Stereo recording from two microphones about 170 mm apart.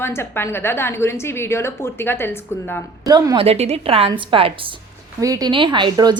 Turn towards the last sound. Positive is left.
turn(degrees=-25)  # may be behind; listen again after turning